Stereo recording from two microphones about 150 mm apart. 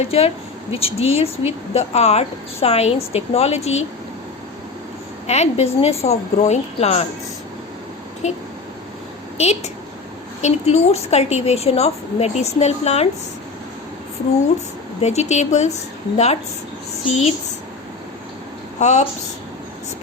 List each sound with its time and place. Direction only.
0.0 s speech: 40° left (ahead or behind)
5.2 s speech: 45° left (ahead or behind)
8.2 s speech: 50° left (ahead or behind)
10.4 s speech: 50° left (ahead or behind)
15.0 s speech: 50° left (ahead or behind)
18.8 s a woman's voice: 50° left (ahead or behind)